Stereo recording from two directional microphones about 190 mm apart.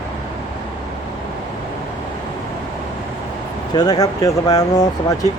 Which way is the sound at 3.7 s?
20° left (ahead or behind).